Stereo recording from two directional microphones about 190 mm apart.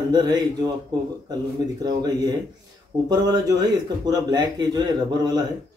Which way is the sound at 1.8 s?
20° right (ahead or behind).